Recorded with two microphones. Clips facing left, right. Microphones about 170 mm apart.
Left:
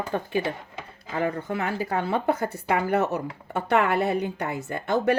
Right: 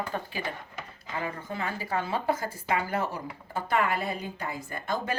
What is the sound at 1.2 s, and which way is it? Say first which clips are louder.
A woman's voice: left 8 dB; 65° left (ahead or behind).